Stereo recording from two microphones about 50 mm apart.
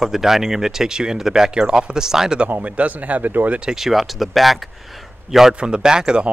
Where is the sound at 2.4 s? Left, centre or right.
Right.